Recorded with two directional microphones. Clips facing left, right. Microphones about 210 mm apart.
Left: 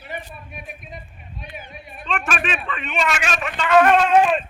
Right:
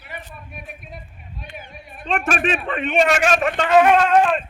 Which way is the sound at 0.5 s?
Centre (ahead or behind).